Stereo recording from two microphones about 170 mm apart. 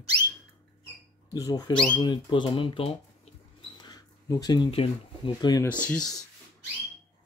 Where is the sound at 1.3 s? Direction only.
20° left (ahead or behind).